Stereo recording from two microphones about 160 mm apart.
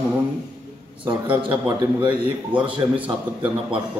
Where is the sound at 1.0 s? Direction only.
30° right (ahead or behind).